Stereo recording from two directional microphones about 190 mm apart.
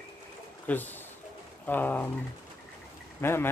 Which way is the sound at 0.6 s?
10° left (ahead or behind).